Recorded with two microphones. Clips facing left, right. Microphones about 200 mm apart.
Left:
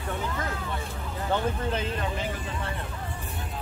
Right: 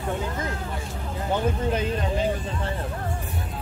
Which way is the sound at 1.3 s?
15° right (ahead or behind).